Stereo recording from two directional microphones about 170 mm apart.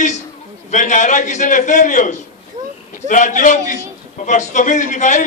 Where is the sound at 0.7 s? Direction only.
45° left (ahead or behind).